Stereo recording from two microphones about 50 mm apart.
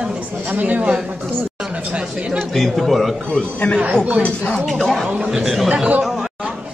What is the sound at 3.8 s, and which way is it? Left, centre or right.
Speech, right.